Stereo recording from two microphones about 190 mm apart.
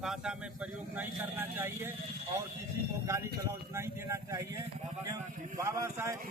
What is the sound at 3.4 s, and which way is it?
Speech, 15° right (ahead or behind).